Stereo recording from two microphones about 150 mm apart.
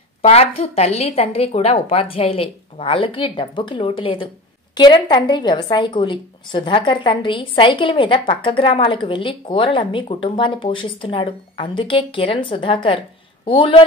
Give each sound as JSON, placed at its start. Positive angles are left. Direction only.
{"t": 0.2, "sound": "a woman's voice", "side_deg": 40}